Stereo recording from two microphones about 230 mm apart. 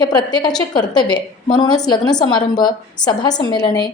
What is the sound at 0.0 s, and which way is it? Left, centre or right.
Speech, centre.